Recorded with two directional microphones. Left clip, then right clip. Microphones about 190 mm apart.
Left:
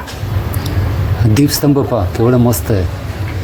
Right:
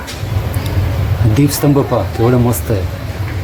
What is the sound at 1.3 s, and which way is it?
Speech, 30° left (ahead or behind).